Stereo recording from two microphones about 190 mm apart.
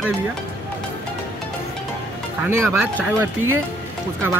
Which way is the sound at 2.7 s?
Centre (ahead or behind).